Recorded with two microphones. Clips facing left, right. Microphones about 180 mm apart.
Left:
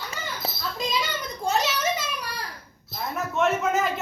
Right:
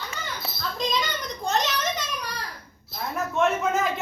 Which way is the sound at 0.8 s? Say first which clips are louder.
Right 1 dB; 10° left (ahead or behind).